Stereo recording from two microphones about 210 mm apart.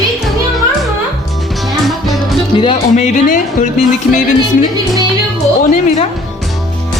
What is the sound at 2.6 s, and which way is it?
Speech, 30° left (ahead or behind).